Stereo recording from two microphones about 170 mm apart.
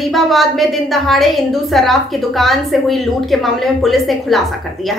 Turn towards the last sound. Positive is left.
turn(degrees=0)  # may be behind; listen again after turning